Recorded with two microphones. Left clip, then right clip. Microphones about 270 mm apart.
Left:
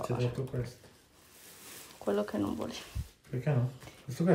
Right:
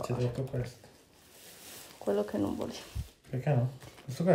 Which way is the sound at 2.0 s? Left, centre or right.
Centre.